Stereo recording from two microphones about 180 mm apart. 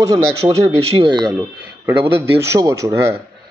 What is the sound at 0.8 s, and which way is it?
Speech, 30° right (ahead or behind).